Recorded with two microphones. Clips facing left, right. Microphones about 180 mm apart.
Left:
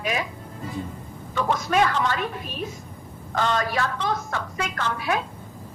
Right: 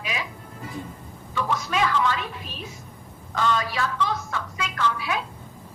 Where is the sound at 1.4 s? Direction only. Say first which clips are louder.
Left 4 dB; 50° left (ahead or behind).